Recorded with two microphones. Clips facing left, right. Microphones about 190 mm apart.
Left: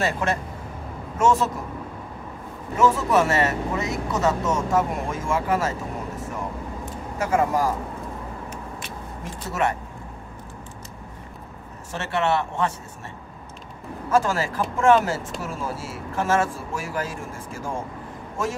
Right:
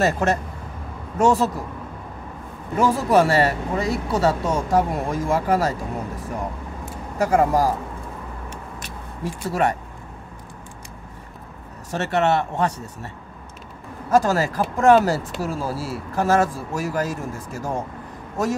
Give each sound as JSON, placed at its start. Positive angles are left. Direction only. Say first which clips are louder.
{"t": 0.0, "sound": "speech", "louder": "right 4 dB", "side_deg": -40}
{"t": 2.8, "sound": "speech", "louder": "right 2 dB", "side_deg": -35}
{"t": 7.2, "sound": "speech", "louder": "right 4 dB", "side_deg": -40}
{"t": 8.5, "sound": "vehicle", "louder": "left 1 dB", "side_deg": -35}
{"t": 11.9, "sound": "speech", "louder": "right 3 dB", "side_deg": -40}
{"t": 14.1, "sound": "speech", "louder": "right 3 dB", "side_deg": -40}